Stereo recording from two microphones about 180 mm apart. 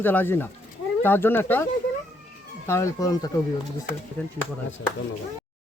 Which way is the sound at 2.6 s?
15° left (ahead or behind).